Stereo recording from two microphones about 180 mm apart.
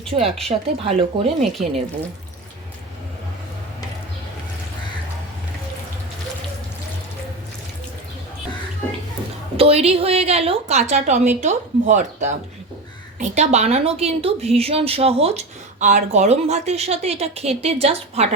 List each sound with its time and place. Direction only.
0.2 s a woman's voice: 35° right (ahead or behind)
9.6 s a woman's voice: 35° right (ahead or behind)